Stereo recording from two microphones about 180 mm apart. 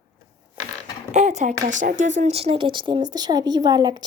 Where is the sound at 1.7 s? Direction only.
45° right (ahead or behind).